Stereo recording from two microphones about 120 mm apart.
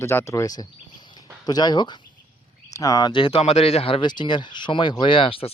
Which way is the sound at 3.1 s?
45° left (ahead or behind).